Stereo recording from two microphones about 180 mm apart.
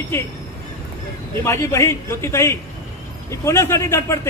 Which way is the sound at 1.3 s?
15° left (ahead or behind).